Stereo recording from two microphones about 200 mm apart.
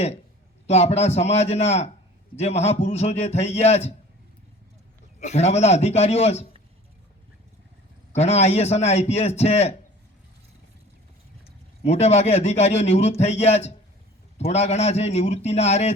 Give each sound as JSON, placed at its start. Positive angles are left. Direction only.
{"t": 0.7, "sound": "a man's voice", "side_deg": 30}
{"t": 5.2, "sound": "a man's voice", "side_deg": 35}
{"t": 8.1, "sound": "a man's voice", "side_deg": 35}
{"t": 11.9, "sound": "a man's voice", "side_deg": 30}